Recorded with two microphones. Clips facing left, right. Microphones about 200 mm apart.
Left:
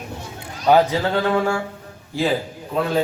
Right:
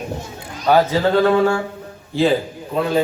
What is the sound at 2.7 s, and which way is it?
Speech, centre (ahead or behind).